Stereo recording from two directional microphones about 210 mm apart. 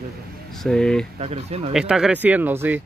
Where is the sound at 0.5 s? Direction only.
Centre (ahead or behind).